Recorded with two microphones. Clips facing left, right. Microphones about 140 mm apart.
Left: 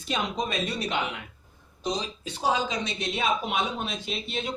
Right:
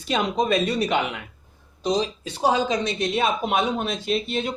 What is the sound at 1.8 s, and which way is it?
Speech, 80° right.